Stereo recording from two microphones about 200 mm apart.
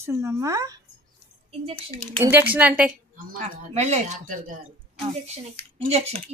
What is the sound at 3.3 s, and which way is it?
Speech, 40° right (ahead or behind).